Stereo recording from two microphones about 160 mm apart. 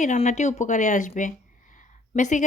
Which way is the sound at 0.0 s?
50° left (ahead or behind).